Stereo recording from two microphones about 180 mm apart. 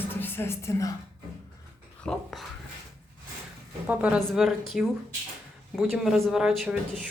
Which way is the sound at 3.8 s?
10° right (ahead or behind).